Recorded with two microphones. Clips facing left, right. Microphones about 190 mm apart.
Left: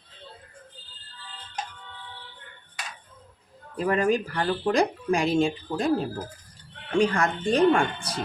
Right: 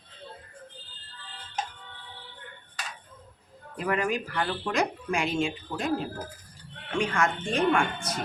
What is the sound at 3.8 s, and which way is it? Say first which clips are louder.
Speech: left 5 dB; 35° left (ahead or behind).